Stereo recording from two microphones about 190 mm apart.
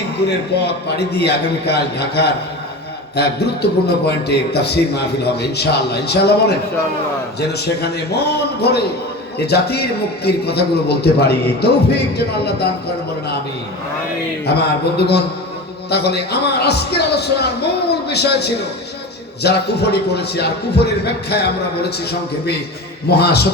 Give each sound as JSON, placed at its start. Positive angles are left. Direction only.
{"t": 0.3, "sound": "a man's voice", "side_deg": 60}
{"t": 14.9, "sound": "a man's voice", "side_deg": 60}
{"t": 23.0, "sound": "a man's voice", "side_deg": 55}